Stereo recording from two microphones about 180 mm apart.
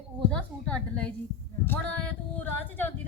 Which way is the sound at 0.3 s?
5° left (ahead or behind).